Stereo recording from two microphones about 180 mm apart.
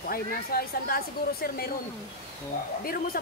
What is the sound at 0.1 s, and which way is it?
Speech, 55° left (ahead or behind).